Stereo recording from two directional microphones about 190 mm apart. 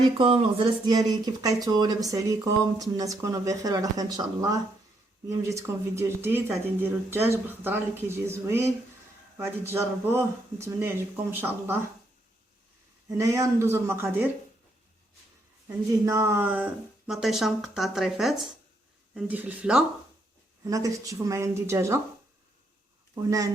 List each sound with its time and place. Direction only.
0.2 s speech: 25° right (ahead or behind)
5.5 s speech: 15° right (ahead or behind)
13.1 s speech: 15° right (ahead or behind)
16.0 s speech: 15° right (ahead or behind)
20.7 s speech: 20° right (ahead or behind)